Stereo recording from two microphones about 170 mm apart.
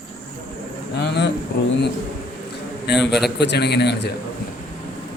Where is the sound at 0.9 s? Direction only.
80° left.